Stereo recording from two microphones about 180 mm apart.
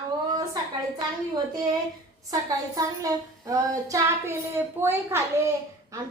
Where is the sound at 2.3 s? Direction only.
20° right (ahead or behind).